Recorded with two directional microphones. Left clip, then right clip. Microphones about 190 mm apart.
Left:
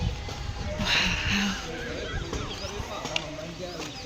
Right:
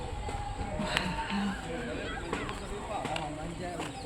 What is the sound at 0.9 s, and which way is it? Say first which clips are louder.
Music: left 9 dB; 5° left (ahead or behind).